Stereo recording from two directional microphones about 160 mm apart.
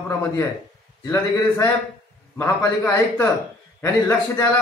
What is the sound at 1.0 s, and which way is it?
A man's voice, 20° left (ahead or behind).